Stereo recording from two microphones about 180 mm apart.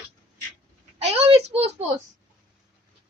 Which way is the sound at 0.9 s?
35° right (ahead or behind).